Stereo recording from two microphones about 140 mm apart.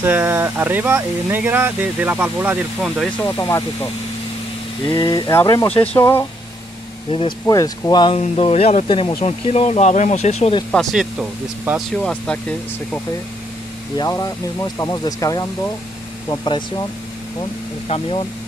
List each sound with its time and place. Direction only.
0.0 s speech: 15° right (ahead or behind)
3.2 s speech: 20° left (ahead or behind)
4.8 s speech: 30° left (ahead or behind)
7.1 s speech: 40° left (ahead or behind)
7.4 s speech: 25° left (ahead or behind)
8.1 s speech: 45° left (ahead or behind)
10.7 s speech: centre (ahead or behind)
11.9 s speech: 5° left (ahead or behind)
13.9 s speech: 25° left (ahead or behind)
17.8 s speech: 45° left (ahead or behind)